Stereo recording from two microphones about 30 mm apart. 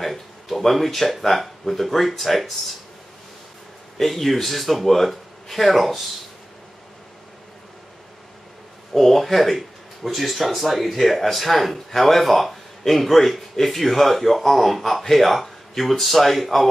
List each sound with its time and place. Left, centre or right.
0.0 s speech: centre
4.0 s speech: centre
8.9 s speech: centre